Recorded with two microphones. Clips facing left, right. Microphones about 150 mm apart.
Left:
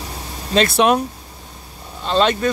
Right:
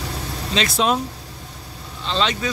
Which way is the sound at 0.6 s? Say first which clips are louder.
Left 6 dB; 60° left (ahead or behind).